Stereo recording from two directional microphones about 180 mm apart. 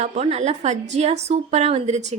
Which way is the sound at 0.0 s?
35° right (ahead or behind).